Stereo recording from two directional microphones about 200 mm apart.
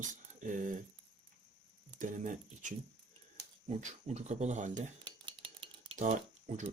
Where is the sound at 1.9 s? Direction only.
40° right (ahead or behind).